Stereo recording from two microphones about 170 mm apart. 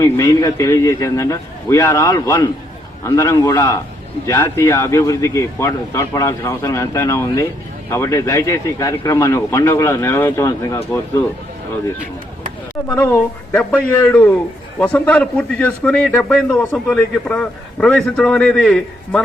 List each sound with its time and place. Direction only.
0.0 s a man's voice: 20° left (ahead or behind)
13.0 s a man's voice: 10° left (ahead or behind)